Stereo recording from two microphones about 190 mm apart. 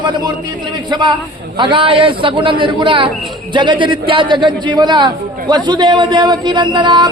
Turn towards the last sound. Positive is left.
turn(degrees=-25)  # may be behind; listen again after turning